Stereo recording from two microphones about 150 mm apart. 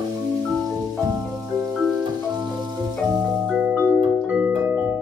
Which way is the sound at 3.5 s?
10° right (ahead or behind).